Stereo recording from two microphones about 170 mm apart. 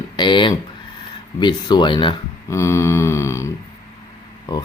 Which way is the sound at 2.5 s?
15° left (ahead or behind).